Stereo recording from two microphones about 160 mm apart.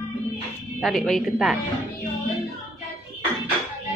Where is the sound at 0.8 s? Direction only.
Centre (ahead or behind).